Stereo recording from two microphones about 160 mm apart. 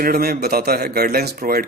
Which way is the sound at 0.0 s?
70° right (ahead or behind).